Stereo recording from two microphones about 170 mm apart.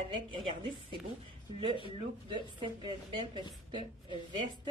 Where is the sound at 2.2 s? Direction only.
30° right (ahead or behind).